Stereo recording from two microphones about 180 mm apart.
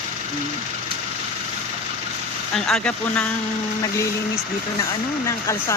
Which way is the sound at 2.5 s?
5° left (ahead or behind).